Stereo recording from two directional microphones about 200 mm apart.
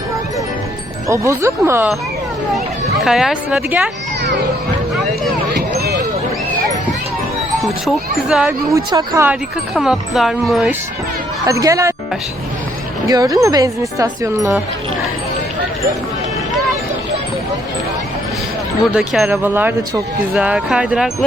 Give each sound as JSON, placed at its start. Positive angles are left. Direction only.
{"t": 1.0, "sound": "speech", "side_deg": -15}
{"t": 3.0, "sound": "speech", "side_deg": 0}
{"t": 5.5, "sound": "a sound", "side_deg": -50}
{"t": 7.6, "sound": "speech", "side_deg": 0}
{"t": 8.7, "sound": "speech", "side_deg": -15}
{"t": 11.4, "sound": "speech", "side_deg": -15}
{"t": 13.1, "sound": "speech", "side_deg": -15}
{"t": 18.9, "sound": "speech", "side_deg": -5}